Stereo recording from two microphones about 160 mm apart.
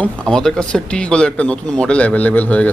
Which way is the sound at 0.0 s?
5° left (ahead or behind).